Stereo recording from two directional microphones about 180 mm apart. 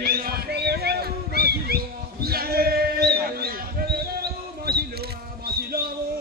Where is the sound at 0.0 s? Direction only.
55° right (ahead or behind).